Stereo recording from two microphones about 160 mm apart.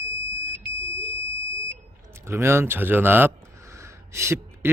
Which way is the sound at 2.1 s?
15° right (ahead or behind).